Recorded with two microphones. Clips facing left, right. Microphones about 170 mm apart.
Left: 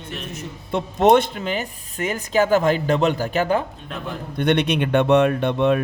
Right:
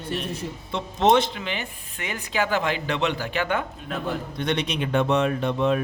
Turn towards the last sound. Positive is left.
turn(degrees=65)  # may be behind; listen again after turning